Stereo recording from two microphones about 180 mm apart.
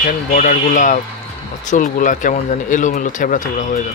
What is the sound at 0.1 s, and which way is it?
Speech, 45° left (ahead or behind).